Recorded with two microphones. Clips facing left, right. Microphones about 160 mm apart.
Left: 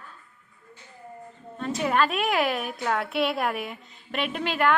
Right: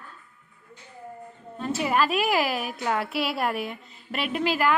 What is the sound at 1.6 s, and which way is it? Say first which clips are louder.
A woman's voice: even; 5° right (ahead or behind).